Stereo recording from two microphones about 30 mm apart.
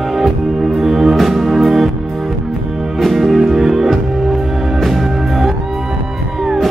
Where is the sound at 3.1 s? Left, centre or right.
Centre.